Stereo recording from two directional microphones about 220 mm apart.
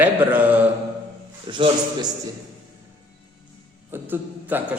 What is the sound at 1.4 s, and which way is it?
Speech, 20° right (ahead or behind).